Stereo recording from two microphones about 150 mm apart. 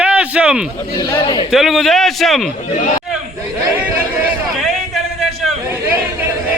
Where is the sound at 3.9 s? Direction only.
10° right (ahead or behind).